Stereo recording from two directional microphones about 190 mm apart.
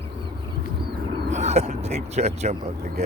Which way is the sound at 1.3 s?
35° right (ahead or behind).